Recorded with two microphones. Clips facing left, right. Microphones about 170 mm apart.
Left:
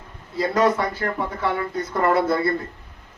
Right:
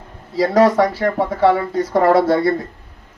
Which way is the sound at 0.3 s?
85° right.